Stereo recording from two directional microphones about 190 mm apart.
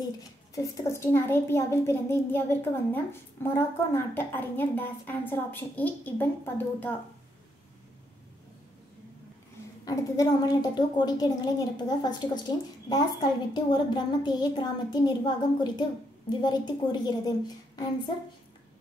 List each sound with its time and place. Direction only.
0.6 s a child's voice: 15° left (ahead or behind)
9.8 s a woman's voice: 20° left (ahead or behind)